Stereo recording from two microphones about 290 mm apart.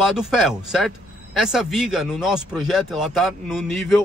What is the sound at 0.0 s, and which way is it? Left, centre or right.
Speech, centre.